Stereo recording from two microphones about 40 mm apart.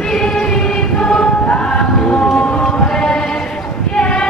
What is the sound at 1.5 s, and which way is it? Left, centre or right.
Music, left.